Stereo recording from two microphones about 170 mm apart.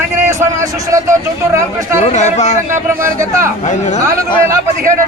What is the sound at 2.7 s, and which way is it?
Speech, 15° right (ahead or behind).